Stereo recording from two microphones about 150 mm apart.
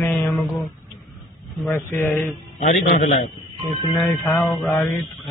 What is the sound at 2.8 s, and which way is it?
Speech, 40° left (ahead or behind).